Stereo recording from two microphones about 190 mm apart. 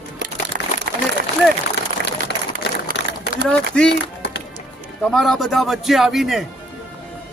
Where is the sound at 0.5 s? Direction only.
50° right (ahead or behind).